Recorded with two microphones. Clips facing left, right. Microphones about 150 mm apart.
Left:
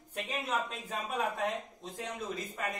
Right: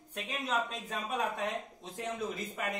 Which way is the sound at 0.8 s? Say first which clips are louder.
Even; centre (ahead or behind).